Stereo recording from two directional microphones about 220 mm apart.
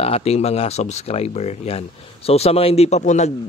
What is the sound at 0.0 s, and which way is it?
Speech, 25° left (ahead or behind).